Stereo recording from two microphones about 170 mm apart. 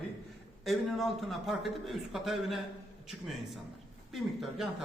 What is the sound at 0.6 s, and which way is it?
A man's voice, centre (ahead or behind).